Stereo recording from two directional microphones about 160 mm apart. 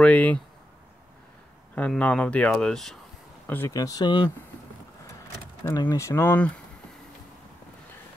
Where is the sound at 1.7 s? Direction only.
10° left (ahead or behind).